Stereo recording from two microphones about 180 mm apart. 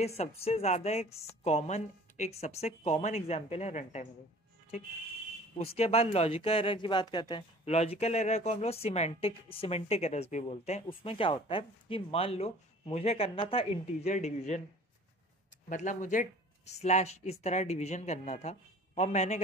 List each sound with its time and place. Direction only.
0.2 s speech: 35° left (ahead or behind)
5.8 s speech: 35° left (ahead or behind)
15.7 s speech: 45° left (ahead or behind)